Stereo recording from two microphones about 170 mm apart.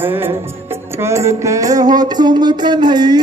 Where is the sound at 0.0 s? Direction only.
15° right (ahead or behind).